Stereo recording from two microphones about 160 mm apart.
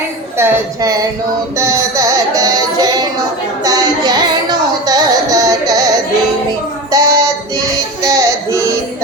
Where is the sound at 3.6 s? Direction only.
25° right (ahead or behind).